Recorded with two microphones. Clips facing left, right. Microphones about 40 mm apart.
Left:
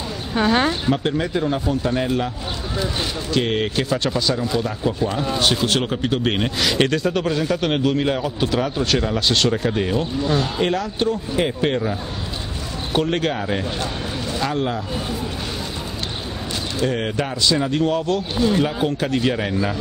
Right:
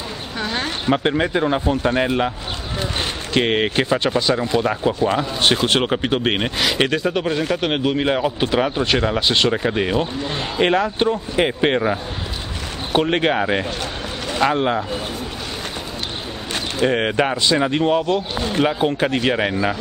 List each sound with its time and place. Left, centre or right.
0.4 s speech: centre
0.8 s speech: right
3.3 s speech: right
6.6 s speech: centre; by 14.8 s right
16.8 s speech: right
18.4 s speech: right
18.9 s speech: right